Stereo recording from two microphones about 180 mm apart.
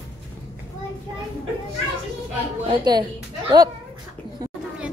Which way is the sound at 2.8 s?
25° right (ahead or behind).